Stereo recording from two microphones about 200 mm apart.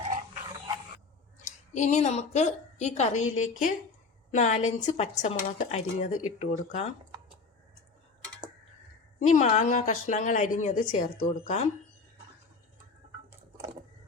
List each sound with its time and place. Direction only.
1.7 s speech: 35° left (ahead or behind)
9.2 s speech: 40° left (ahead or behind)